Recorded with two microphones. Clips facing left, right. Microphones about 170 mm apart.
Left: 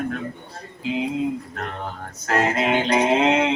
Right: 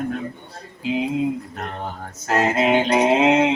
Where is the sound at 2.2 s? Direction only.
20° right (ahead or behind).